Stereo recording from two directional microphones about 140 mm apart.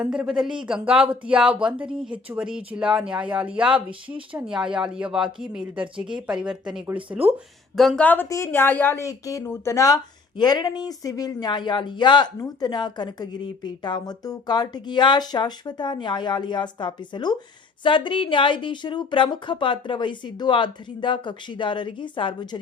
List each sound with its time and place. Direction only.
0.0 s speech: 5° right (ahead or behind)
7.8 s speech: centre (ahead or behind)
8.0 s a woman's voice: 10° left (ahead or behind); by 22.6 s 35° left (ahead or behind)